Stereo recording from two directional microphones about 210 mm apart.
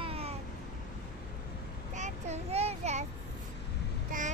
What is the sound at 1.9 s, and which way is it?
Child singing, 35° right (ahead or behind).